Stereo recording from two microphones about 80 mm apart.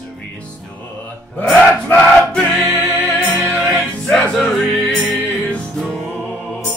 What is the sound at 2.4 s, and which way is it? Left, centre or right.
Music, centre.